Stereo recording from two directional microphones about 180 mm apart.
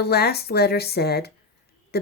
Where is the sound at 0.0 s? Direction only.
60° left (ahead or behind).